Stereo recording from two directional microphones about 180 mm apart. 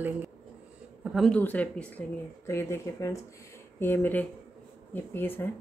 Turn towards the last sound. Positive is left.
turn(degrees=10)  # may be behind; listen again after turning